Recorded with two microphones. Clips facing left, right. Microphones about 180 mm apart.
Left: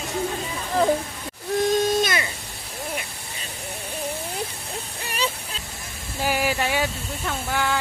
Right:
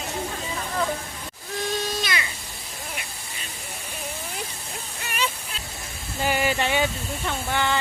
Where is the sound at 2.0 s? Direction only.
45° left (ahead or behind).